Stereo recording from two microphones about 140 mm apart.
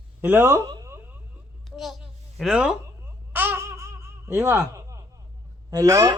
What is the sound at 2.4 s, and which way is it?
Speech, 5° right (ahead or behind).